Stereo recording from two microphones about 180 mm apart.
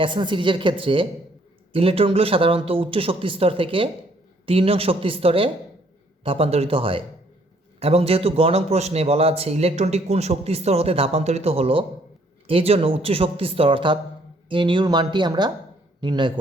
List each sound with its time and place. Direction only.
0.0 s a man's voice: 25° right (ahead or behind)